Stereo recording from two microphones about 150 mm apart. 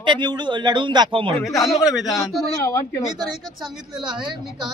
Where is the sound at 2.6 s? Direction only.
20° left (ahead or behind).